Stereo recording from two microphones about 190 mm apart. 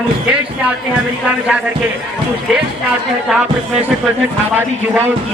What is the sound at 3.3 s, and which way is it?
Speech, 5° right (ahead or behind).